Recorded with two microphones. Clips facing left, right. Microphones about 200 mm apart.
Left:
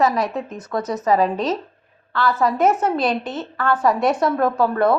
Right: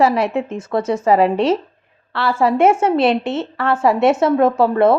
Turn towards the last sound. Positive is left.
turn(degrees=-25)  # may be behind; listen again after turning